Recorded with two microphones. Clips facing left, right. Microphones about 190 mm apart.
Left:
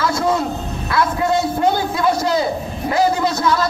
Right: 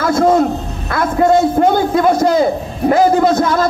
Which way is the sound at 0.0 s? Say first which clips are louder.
Right 7 dB; 50° right (ahead or behind).